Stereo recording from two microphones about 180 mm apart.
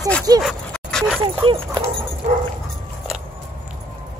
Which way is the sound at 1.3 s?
30° right (ahead or behind).